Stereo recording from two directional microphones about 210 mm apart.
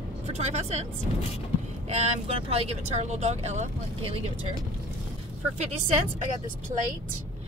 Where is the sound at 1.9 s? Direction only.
30° right (ahead or behind).